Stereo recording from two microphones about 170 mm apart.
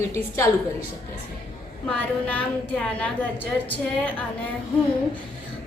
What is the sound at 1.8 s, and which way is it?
A woman's voice, 10° left (ahead or behind).